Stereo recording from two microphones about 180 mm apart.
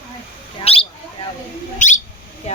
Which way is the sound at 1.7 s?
45° left (ahead or behind).